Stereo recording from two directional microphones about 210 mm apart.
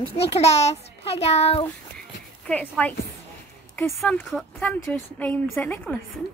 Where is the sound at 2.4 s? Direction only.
5° left (ahead or behind).